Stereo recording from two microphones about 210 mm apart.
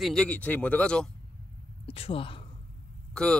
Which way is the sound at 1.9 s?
25° left (ahead or behind).